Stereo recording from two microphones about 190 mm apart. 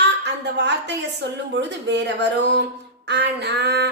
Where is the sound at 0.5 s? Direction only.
65° right (ahead or behind).